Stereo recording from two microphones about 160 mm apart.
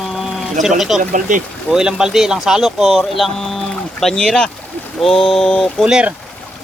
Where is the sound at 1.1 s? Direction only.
55° right (ahead or behind).